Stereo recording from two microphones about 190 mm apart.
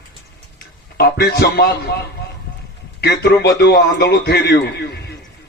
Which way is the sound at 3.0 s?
60° left (ahead or behind).